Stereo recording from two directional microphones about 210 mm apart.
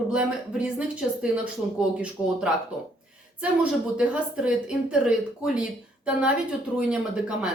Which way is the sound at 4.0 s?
5° right (ahead or behind).